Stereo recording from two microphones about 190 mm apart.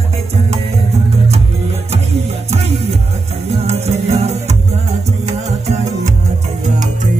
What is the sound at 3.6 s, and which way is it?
Music, 35° right (ahead or behind).